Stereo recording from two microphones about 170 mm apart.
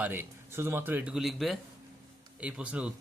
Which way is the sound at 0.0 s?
10° right (ahead or behind).